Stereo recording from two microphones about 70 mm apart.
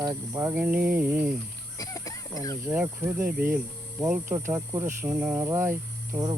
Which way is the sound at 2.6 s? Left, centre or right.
Right.